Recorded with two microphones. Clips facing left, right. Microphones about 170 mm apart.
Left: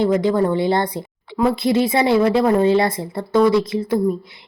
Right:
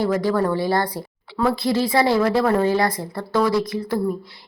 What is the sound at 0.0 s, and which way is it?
Speech, 20° left (ahead or behind).